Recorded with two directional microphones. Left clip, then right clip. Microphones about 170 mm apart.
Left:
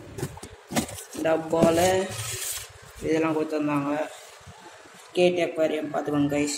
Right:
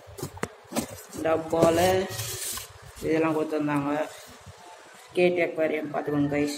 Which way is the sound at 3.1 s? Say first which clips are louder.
Even; 10° left (ahead or behind).